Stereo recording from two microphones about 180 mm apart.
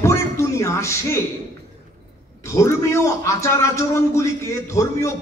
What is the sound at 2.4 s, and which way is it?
A man's voice, 15° left (ahead or behind).